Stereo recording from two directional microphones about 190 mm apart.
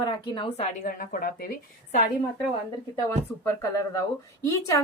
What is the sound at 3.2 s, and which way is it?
Speech, 10° left (ahead or behind).